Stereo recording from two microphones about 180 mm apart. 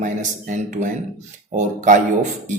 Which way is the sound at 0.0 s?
45° right (ahead or behind).